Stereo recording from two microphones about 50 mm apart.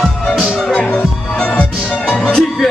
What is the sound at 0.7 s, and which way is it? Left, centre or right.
Music, centre.